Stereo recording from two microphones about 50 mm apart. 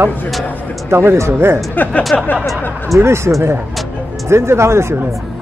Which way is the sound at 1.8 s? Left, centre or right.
Left.